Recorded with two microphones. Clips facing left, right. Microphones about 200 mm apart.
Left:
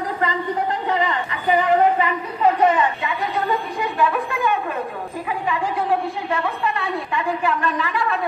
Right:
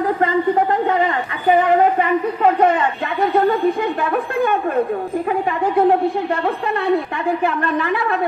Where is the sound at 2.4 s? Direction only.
55° right (ahead or behind).